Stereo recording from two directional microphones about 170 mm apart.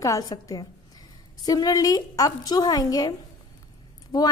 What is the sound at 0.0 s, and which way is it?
A woman's voice, 20° left (ahead or behind).